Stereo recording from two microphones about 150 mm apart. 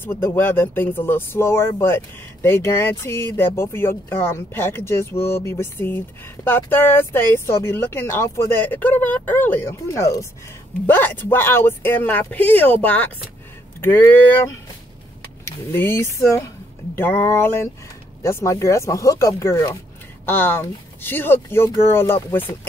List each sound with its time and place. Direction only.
0.0 s speech: 15° left (ahead or behind)
15.4 s speech: 15° left (ahead or behind)